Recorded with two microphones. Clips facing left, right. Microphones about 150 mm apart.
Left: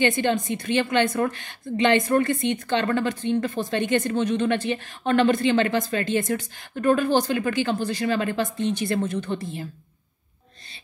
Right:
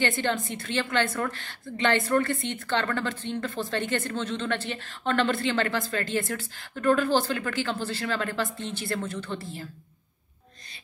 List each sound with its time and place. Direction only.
0.0 s a woman's voice: 20° left (ahead or behind)